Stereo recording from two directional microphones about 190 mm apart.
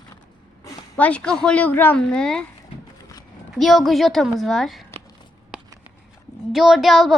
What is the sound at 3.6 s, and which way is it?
A woman's voice, centre (ahead or behind).